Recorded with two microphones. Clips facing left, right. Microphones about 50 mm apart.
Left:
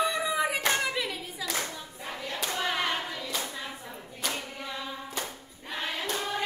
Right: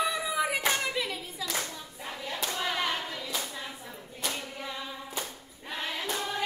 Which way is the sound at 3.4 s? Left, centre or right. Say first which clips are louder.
Left 2 dB; centre.